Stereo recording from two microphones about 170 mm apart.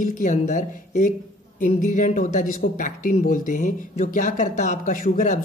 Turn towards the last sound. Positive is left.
turn(degrees=55)  # may be behind; listen again after turning